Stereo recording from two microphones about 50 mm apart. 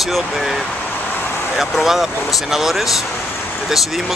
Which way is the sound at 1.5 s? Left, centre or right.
Centre.